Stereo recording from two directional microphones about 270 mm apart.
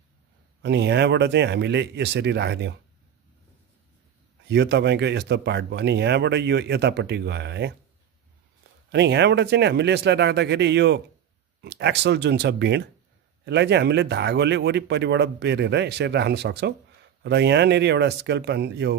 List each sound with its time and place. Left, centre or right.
0.6 s speech: right
4.5 s speech: right
8.9 s speech: right